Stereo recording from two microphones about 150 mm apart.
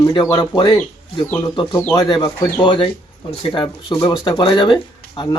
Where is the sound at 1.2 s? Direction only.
20° left (ahead or behind).